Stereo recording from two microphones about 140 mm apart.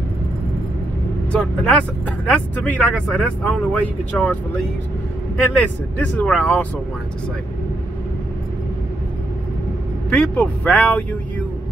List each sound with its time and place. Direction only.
1.3 s speech: 5° left (ahead or behind)
5.6 s speech: 10° left (ahead or behind)
10.0 s speech: 5° left (ahead or behind)